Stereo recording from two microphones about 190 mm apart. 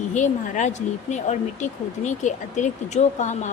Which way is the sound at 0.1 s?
40° left (ahead or behind).